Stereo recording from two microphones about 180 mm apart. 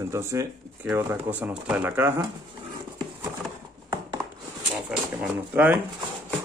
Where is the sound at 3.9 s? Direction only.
20° right (ahead or behind).